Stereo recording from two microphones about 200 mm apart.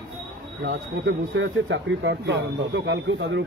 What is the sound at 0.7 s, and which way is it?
Speech, 65° right (ahead or behind).